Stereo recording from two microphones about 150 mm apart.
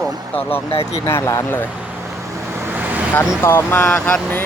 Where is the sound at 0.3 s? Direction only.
15° left (ahead or behind).